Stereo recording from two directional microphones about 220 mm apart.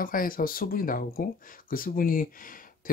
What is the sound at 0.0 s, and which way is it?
Speech, 40° left (ahead or behind).